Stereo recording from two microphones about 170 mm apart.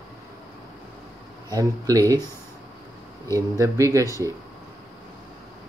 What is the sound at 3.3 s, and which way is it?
Speech, 20° right (ahead or behind).